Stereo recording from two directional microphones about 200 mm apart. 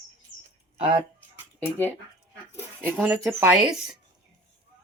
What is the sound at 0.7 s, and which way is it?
Speech, 30° right (ahead or behind).